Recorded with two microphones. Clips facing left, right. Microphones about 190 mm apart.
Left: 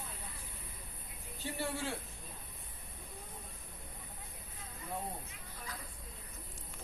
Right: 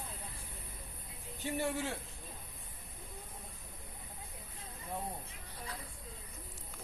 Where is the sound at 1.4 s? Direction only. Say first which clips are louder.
Right 3 dB; 15° right (ahead or behind).